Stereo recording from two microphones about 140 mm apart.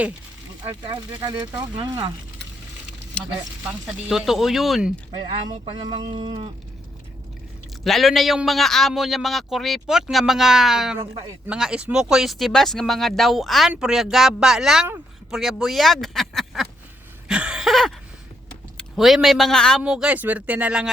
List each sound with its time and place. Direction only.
1.1 s speech: 25° right (ahead or behind)
3.7 s speech: 5° right (ahead or behind)
5.2 s speech: 30° right (ahead or behind)
7.9 s speech: centre (ahead or behind)
11.0 s speech: 30° right (ahead or behind)
11.4 s speech: 5° right (ahead or behind)
17.2 s a sound: 5° right (ahead or behind)
18.8 s a man's voice: centre (ahead or behind)